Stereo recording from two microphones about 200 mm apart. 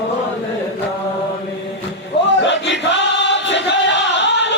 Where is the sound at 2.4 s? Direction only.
65° left (ahead or behind).